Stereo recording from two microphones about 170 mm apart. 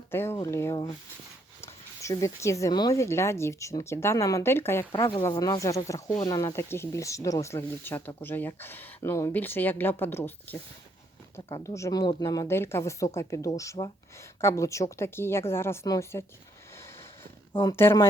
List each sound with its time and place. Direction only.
0.1 s speech: 15° left (ahead or behind)
4.9 s speech: 30° left (ahead or behind); by 10.6 s 15° left (ahead or behind)
11.6 s speech: 20° left (ahead or behind)
17.6 s speech: 15° left (ahead or behind)